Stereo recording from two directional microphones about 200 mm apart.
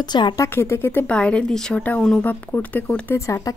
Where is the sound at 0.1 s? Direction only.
20° left (ahead or behind).